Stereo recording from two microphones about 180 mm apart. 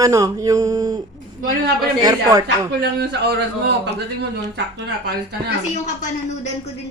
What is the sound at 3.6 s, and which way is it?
A woman's voice, 70° right (ahead or behind).